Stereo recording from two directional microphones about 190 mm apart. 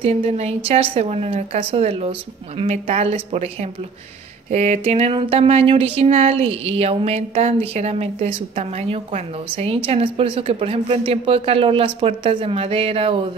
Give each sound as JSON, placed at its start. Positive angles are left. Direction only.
{"t": 0.0, "sound": "speech", "side_deg": -35}
{"t": 4.5, "sound": "speech", "side_deg": -35}